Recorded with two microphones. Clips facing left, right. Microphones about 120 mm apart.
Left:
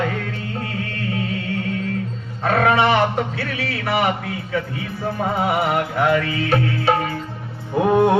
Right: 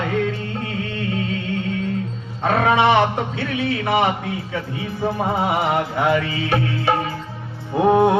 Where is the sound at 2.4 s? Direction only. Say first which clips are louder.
Even; 20° right (ahead or behind).